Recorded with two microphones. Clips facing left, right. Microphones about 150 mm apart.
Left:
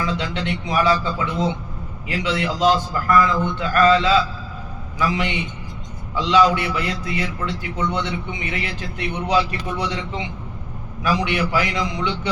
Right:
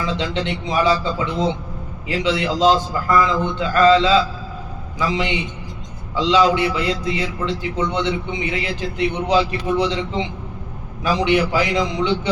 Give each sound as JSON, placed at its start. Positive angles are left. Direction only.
{"t": 0.0, "sound": "a man's voice", "side_deg": -25}